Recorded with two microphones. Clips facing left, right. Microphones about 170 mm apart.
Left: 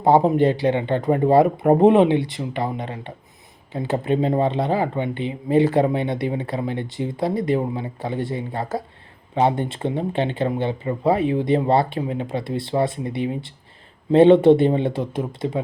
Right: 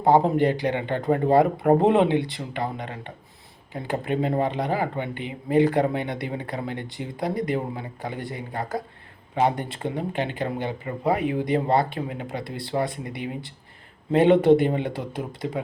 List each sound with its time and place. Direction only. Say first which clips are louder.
0.0 s speech: left 3 dB; 20° left (ahead or behind)